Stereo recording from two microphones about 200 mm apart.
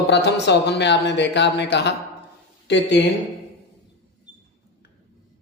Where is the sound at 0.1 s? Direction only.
60° left (ahead or behind).